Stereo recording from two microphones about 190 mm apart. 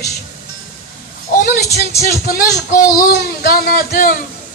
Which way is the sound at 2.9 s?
50° left (ahead or behind).